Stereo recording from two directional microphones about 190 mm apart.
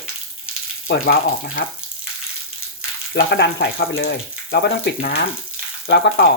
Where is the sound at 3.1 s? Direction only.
60° left (ahead or behind).